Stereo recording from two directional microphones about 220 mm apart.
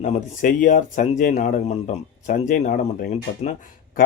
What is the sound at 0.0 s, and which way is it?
Speech, 35° left (ahead or behind).